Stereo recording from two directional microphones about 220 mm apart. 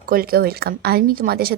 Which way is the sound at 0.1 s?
40° right (ahead or behind).